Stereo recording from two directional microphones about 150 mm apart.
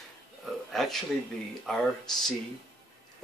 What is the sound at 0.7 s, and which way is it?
Speech, centre (ahead or behind).